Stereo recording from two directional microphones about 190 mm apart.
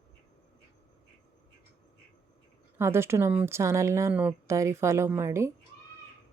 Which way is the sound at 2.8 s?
15° right (ahead or behind).